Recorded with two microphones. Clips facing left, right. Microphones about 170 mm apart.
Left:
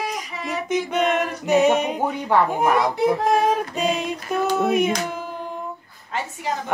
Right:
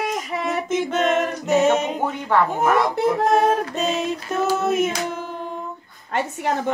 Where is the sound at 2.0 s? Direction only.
15° left (ahead or behind).